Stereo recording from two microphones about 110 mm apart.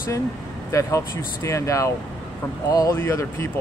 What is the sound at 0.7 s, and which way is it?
Speech, 25° left (ahead or behind).